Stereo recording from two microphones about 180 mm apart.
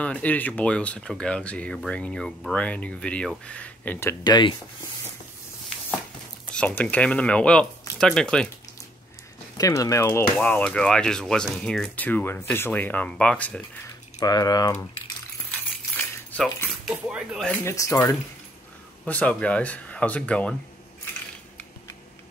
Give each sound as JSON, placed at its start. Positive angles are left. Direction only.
{"t": 0.0, "sound": "speech", "side_deg": 10}
{"t": 6.5, "sound": "speech", "side_deg": 5}
{"t": 9.6, "sound": "speech", "side_deg": 20}
{"t": 14.2, "sound": "speech", "side_deg": 20}
{"t": 16.0, "sound": "cutlery", "side_deg": 10}
{"t": 16.8, "sound": "speech", "side_deg": 0}
{"t": 17.5, "sound": "speech", "side_deg": 15}